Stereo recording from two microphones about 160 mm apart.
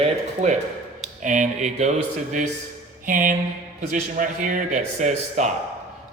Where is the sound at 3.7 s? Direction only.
55° right (ahead or behind).